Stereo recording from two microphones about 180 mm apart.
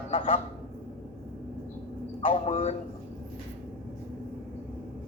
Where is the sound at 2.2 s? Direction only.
35° left (ahead or behind).